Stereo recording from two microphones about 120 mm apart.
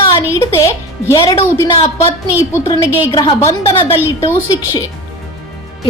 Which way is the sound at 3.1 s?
30° left (ahead or behind).